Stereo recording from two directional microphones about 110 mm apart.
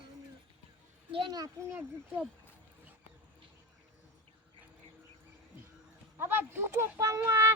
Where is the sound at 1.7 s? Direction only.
15° right (ahead or behind).